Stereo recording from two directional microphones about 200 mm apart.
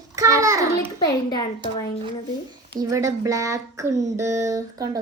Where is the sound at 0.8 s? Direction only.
20° left (ahead or behind).